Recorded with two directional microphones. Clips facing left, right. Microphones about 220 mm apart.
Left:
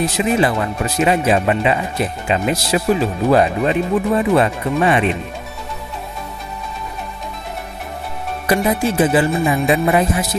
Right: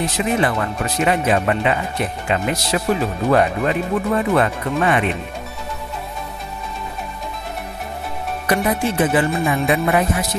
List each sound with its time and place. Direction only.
0.2 s speech: 20° left (ahead or behind)
8.5 s speech: 20° left (ahead or behind)